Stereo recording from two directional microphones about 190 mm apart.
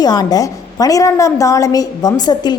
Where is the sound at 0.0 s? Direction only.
20° left (ahead or behind).